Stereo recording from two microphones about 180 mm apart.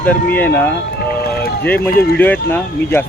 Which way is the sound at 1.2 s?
60° left (ahead or behind).